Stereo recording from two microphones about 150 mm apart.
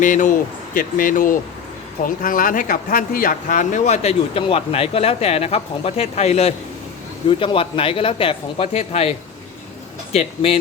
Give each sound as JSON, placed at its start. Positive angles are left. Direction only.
{"t": 0.0, "sound": "speech", "side_deg": 60}